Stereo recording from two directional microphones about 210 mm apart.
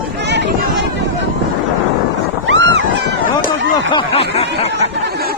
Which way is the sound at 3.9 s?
25° left (ahead or behind).